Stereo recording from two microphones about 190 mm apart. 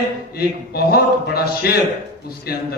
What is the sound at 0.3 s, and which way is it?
A man's voice, 55° left (ahead or behind).